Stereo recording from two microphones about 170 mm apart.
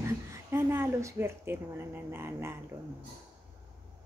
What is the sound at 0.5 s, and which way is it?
Speech, 15° right (ahead or behind).